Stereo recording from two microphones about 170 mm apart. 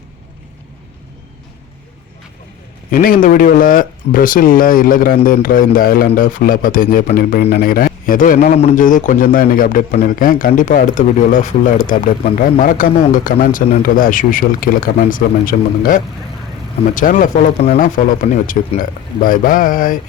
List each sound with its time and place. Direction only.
2.9 s speech: 55° left (ahead or behind)
8.5 s a man's voice: 40° left (ahead or behind)
8.8 s a man's voice: 50° left (ahead or behind)